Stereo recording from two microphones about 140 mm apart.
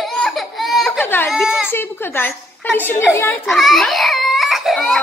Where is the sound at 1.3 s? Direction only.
5° right (ahead or behind).